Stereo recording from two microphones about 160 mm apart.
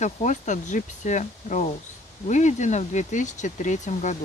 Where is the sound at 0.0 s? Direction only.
50° left (ahead or behind).